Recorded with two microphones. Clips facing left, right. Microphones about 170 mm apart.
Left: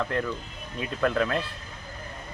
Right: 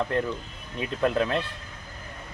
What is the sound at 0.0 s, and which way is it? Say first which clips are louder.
Speech: right 2 dB; 20° right (ahead or behind).